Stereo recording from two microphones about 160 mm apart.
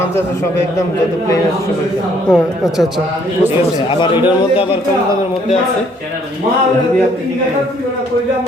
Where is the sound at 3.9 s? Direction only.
30° left (ahead or behind).